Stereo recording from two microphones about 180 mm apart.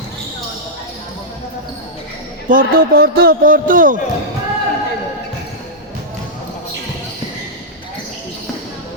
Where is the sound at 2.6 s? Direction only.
60° right (ahead or behind).